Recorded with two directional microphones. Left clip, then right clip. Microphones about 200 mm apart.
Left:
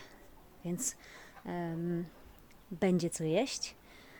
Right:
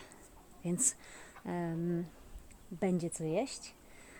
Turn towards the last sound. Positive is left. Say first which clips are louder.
# left 3 dB
turn(degrees=20)  # may be behind; listen again after turning